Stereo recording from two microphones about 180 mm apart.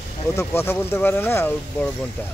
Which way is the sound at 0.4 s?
15° left (ahead or behind).